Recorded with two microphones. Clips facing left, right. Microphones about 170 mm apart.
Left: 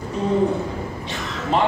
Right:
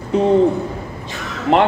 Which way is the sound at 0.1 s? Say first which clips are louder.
Right 9 dB; 70° right (ahead or behind).